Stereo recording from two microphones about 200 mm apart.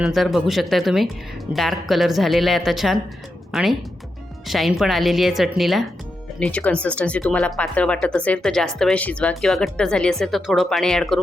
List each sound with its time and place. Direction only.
0.0 s a woman's voice: centre (ahead or behind)